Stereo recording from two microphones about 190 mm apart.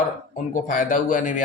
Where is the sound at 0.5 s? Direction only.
40° left (ahead or behind).